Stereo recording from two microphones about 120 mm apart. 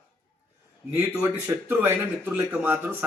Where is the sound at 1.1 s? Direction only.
25° right (ahead or behind).